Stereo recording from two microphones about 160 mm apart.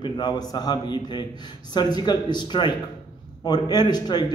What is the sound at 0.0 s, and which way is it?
A man's voice, 25° left (ahead or behind).